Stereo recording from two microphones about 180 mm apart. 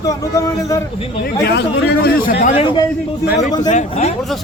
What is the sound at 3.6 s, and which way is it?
Speech, 40° left (ahead or behind).